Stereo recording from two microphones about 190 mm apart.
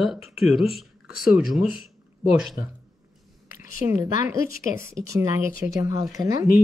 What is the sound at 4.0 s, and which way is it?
Speech, 40° left (ahead or behind).